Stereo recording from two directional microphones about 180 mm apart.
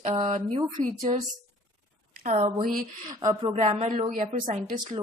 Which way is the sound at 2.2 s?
40° right (ahead or behind).